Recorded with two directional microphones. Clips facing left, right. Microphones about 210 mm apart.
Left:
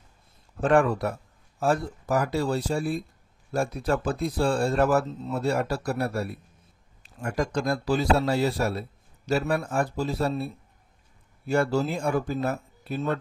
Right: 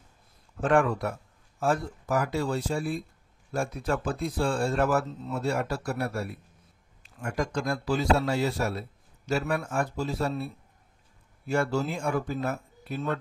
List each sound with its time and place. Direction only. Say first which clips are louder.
0.6 s speech: left 2 dB; 35° left (ahead or behind)